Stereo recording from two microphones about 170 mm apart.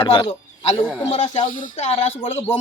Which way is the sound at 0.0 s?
30° left (ahead or behind).